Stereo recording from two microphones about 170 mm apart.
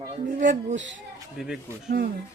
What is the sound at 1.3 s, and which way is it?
Speech, centre (ahead or behind).